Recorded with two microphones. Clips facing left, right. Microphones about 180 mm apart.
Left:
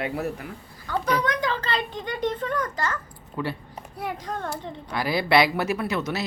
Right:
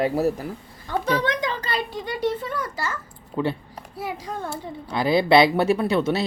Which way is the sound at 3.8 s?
5° right (ahead or behind).